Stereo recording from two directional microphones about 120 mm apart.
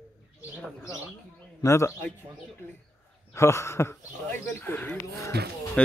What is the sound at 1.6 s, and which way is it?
Speech, 25° left (ahead or behind).